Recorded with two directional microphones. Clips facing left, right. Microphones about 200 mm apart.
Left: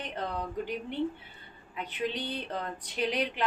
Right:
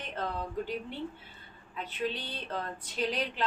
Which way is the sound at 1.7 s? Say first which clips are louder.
Left 1 dB; 15° left (ahead or behind).